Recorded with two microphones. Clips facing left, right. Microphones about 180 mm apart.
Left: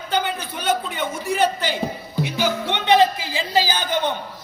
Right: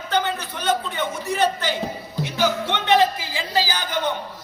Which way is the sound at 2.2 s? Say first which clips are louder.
Right 1 dB; 15° left (ahead or behind).